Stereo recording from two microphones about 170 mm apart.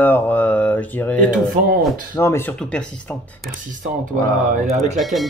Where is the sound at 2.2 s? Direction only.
15° left (ahead or behind).